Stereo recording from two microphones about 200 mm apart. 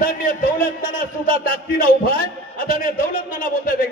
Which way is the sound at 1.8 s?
45° left (ahead or behind).